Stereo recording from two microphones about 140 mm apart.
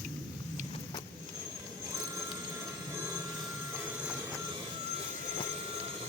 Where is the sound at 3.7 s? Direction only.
15° right (ahead or behind).